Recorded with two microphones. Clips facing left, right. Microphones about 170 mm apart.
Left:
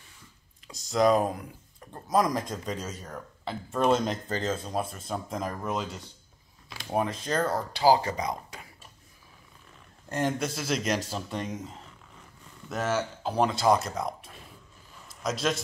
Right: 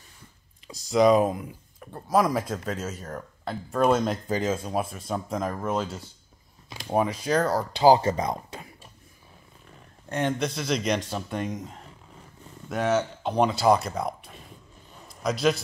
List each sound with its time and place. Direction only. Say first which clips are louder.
0.7 s speech: right 4 dB; centre (ahead or behind)
7.7 s speech: right 4 dB; 20° right (ahead or behind)
10.1 s speech: right 2 dB; 5° left (ahead or behind)
12.6 s speech: right 4 dB; centre (ahead or behind)